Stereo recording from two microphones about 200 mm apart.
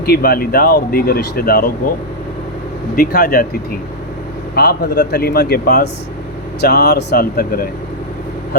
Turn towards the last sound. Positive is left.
turn(degrees=50)  # may be behind; listen again after turning